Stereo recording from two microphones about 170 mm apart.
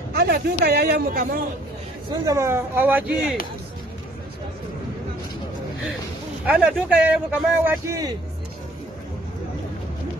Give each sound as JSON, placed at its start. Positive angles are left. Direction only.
{"t": 0.1, "sound": "a man's voice", "side_deg": -65}
{"t": 2.0, "sound": "speech", "side_deg": -20}
{"t": 6.4, "sound": "speech", "side_deg": -5}
{"t": 7.8, "sound": "a man's voice", "side_deg": -20}